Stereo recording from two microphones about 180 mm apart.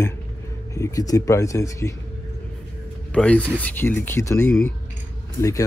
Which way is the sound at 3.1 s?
5° left (ahead or behind).